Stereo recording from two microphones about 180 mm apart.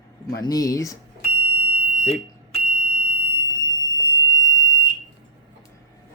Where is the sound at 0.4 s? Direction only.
20° left (ahead or behind).